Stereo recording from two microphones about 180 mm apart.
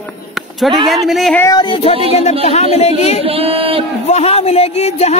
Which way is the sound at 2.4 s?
35° left (ahead or behind).